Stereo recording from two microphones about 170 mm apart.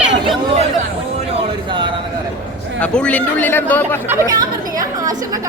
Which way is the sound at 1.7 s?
30° right (ahead or behind).